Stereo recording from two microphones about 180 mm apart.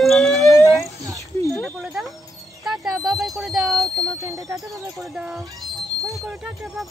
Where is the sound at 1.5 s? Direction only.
Centre (ahead or behind).